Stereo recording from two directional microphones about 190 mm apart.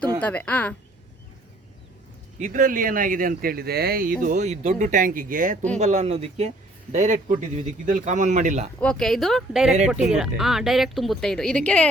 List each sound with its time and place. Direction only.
0.2 s speech: 5° left (ahead or behind)
2.4 s speech: 40° right (ahead or behind)
8.8 s a woman's voice: 5° left (ahead or behind)